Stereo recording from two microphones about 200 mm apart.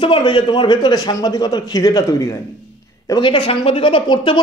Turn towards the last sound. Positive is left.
turn(degrees=25)  # may be behind; listen again after turning